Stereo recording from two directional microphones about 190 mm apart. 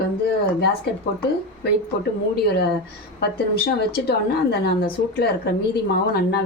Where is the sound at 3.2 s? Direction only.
60° left (ahead or behind).